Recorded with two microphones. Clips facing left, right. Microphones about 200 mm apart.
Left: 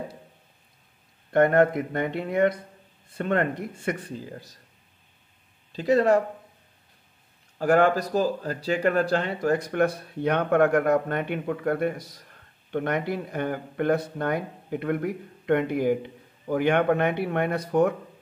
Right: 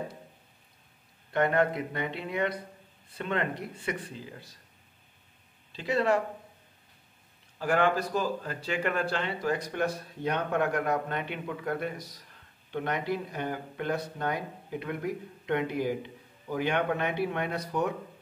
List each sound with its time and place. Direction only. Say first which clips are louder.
1.3 s speech: left 7 dB; 50° left (ahead or behind)
5.7 s speech: left 7 dB; 40° left (ahead or behind)
7.5 s speech: left 6 dB; 45° left (ahead or behind)